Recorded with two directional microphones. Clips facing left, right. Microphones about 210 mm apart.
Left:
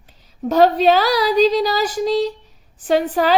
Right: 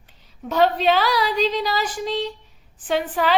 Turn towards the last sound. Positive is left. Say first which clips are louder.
# left 5 dB
turn(degrees=40)  # may be behind; listen again after turning